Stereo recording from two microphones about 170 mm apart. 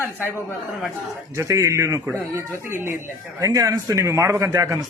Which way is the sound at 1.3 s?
20° right (ahead or behind).